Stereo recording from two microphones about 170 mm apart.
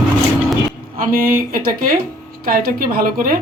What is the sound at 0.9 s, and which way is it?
Speech, 55° right (ahead or behind).